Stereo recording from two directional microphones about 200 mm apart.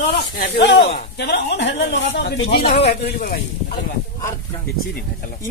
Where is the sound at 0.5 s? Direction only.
60° left (ahead or behind).